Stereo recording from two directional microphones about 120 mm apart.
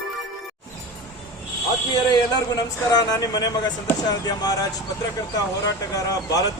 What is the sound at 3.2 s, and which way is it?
Vehicle, 35° left (ahead or behind).